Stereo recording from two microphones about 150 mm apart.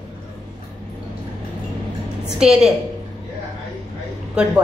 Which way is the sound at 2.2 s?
5° right (ahead or behind).